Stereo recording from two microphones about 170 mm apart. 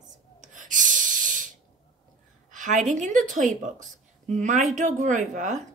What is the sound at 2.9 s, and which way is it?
A woman's voice, 45° right (ahead or behind).